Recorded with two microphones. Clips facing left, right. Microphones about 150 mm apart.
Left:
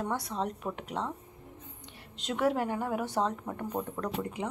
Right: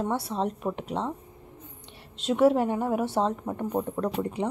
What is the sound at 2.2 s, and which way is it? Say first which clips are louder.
A woman's voice: right 7 dB; 25° right (ahead or behind).